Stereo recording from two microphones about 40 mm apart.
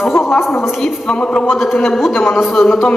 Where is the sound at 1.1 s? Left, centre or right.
Left.